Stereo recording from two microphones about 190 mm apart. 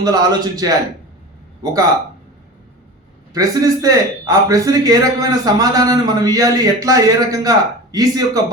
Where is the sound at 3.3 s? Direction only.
20° right (ahead or behind).